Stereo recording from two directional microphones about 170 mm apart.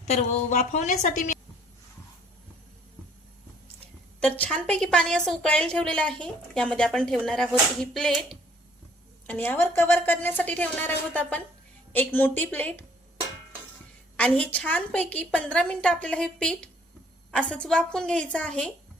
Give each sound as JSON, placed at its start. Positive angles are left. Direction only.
{"t": 0.1, "sound": "a woman's voice", "side_deg": 45}
{"t": 4.2, "sound": "a woman's voice", "side_deg": 5}
{"t": 9.2, "sound": "a woman's voice", "side_deg": 10}
{"t": 14.2, "sound": "a woman's voice", "side_deg": 10}